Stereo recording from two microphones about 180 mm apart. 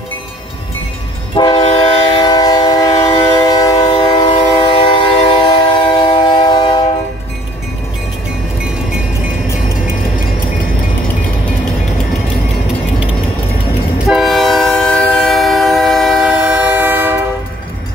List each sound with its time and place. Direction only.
1.3 s train: 25° left (ahead or behind)
14.0 s train: centre (ahead or behind)